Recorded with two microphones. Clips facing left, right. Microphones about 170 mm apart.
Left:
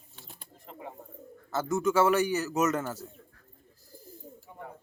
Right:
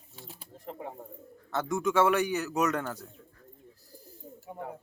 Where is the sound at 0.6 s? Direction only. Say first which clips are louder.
Right 4 dB; 50° right (ahead or behind).